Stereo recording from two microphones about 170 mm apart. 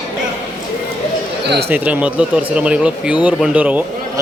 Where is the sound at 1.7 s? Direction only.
10° right (ahead or behind).